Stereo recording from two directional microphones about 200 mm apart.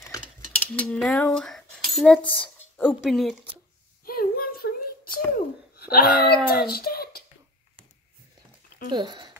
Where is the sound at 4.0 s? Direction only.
45° left (ahead or behind).